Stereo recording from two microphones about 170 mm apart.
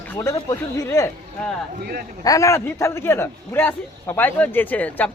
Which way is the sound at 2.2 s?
20° left (ahead or behind).